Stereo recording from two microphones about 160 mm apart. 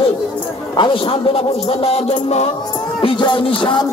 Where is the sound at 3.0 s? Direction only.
30° left (ahead or behind).